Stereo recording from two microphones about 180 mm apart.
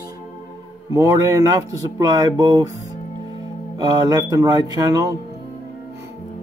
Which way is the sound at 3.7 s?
20° right (ahead or behind).